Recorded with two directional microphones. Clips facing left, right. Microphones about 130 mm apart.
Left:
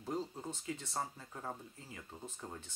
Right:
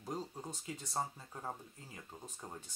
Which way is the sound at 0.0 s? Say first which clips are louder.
Left 2 dB; 10° right (ahead or behind).